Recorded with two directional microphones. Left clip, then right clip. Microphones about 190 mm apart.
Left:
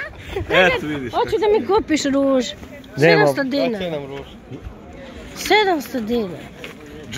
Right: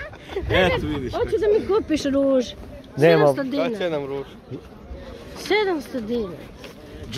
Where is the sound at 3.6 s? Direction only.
35° right (ahead or behind).